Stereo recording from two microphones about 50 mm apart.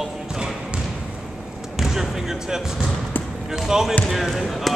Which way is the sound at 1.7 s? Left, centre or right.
Centre.